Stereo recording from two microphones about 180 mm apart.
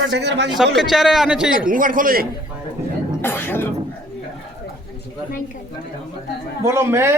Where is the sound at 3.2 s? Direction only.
10° left (ahead or behind).